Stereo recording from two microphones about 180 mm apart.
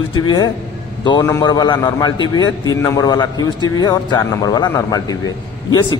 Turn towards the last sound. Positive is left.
turn(degrees=20)  # may be behind; listen again after turning